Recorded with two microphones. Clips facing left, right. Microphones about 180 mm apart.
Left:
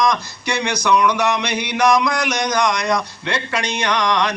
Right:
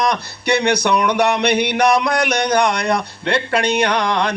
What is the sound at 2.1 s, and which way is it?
Speech, 60° right (ahead or behind).